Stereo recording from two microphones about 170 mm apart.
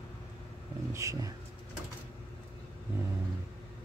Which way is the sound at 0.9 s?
20° right (ahead or behind).